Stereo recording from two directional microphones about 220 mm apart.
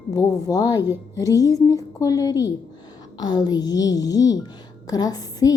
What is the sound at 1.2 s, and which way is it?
A woman's voice, 15° left (ahead or behind).